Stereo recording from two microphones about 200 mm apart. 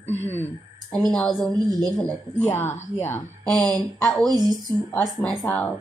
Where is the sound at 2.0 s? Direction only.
10° left (ahead or behind).